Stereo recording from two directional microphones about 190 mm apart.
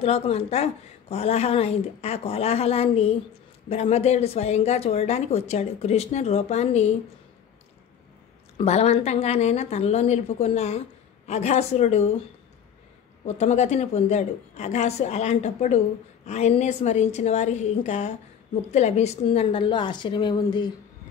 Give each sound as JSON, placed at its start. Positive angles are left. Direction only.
{"t": 0.0, "sound": "speech", "side_deg": 30}
{"t": 8.5, "sound": "speech", "side_deg": 35}
{"t": 13.4, "sound": "a woman's voice", "side_deg": 35}